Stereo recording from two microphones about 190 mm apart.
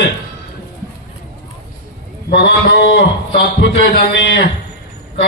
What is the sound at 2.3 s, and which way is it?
A man's voice, 60° left (ahead or behind).